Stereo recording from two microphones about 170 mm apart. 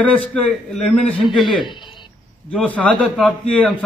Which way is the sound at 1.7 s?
25° left (ahead or behind).